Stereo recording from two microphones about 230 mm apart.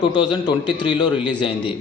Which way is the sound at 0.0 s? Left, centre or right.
Centre.